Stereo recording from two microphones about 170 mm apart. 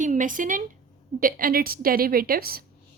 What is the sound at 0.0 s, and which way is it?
A woman's voice, 50° right (ahead or behind).